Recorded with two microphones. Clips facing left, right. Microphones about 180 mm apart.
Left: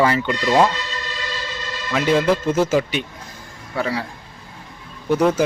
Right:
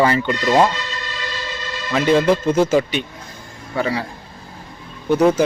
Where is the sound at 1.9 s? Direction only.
5° left (ahead or behind).